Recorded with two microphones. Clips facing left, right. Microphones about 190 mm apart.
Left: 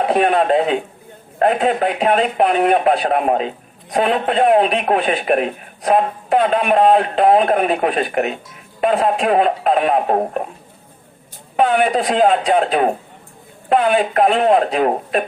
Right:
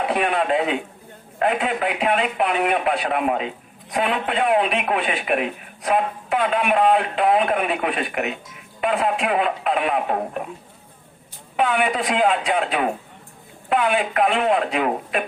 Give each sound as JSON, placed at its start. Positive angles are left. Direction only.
{"t": 0.0, "sound": "a man's voice", "side_deg": 40}
{"t": 11.5, "sound": "a man's voice", "side_deg": 40}